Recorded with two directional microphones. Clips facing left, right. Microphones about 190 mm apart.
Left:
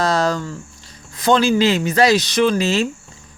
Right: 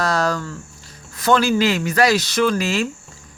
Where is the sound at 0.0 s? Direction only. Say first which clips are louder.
Left 2 dB; 25° left (ahead or behind).